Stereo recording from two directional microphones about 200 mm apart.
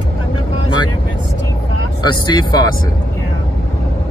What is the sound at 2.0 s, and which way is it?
Speech, 20° left (ahead or behind).